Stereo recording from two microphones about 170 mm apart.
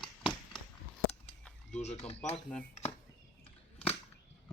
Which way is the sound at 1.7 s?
40° left (ahead or behind).